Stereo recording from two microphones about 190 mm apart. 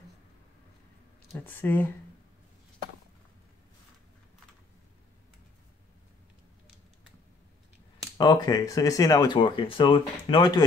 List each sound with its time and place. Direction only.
1.3 s speech: 10° left (ahead or behind)
8.2 s speech: 20° left (ahead or behind)